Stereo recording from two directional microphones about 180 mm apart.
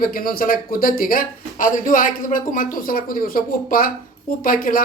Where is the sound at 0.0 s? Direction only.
50° left (ahead or behind).